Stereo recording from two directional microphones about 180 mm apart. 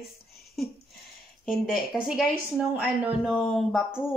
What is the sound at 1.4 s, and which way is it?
Speech, 5° right (ahead or behind).